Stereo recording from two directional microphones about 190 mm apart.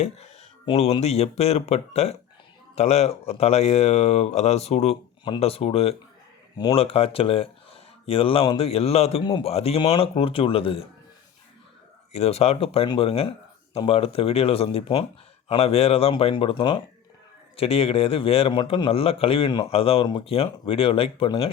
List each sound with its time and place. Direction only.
0.0 s speech: 30° left (ahead or behind)
12.1 s speech: 35° left (ahead or behind)